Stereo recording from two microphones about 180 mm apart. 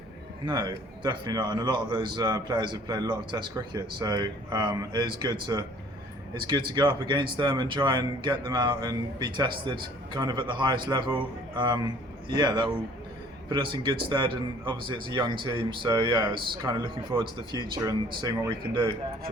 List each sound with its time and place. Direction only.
0.4 s speech: 25° right (ahead or behind)